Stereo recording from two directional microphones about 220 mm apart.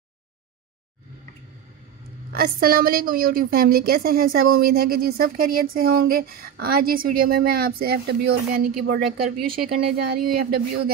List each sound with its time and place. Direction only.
2.3 s a woman's voice: 45° right (ahead or behind)